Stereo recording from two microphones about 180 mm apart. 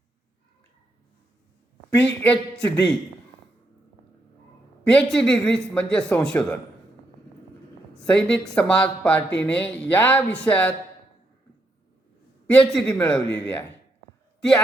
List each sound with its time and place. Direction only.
2.0 s speech: 5° left (ahead or behind)
4.8 s a man's voice: 5° left (ahead or behind)
7.9 s a man's voice: 5° left (ahead or behind)
12.5 s a man's voice: 5° left (ahead or behind)